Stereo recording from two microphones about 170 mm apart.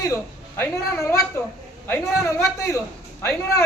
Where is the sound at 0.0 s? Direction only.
15° left (ahead or behind).